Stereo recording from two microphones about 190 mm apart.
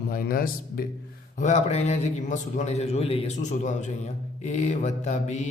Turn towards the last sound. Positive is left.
turn(degrees=35)  # may be behind; listen again after turning